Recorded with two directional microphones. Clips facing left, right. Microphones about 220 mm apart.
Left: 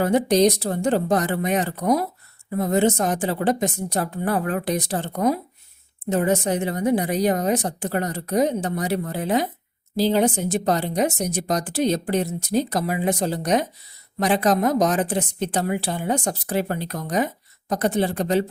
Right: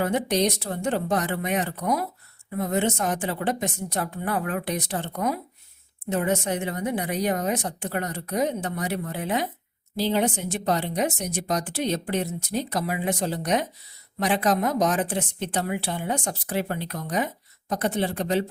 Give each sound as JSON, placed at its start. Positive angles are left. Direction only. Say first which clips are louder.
{"t": 0.0, "sound": "speech", "louder": "left 6 dB", "side_deg": 35}